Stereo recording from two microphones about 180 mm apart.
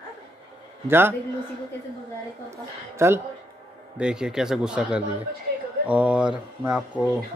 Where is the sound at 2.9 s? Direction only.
15° right (ahead or behind).